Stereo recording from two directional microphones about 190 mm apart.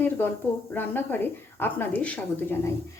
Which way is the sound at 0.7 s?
10° left (ahead or behind).